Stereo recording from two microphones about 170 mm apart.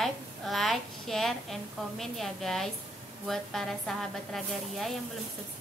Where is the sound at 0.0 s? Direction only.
Centre (ahead or behind).